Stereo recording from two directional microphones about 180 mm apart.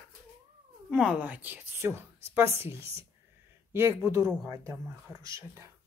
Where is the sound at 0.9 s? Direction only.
5° right (ahead or behind).